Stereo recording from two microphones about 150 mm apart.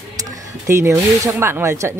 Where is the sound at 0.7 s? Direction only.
15° right (ahead or behind).